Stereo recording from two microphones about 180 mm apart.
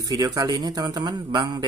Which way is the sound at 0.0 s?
20° right (ahead or behind).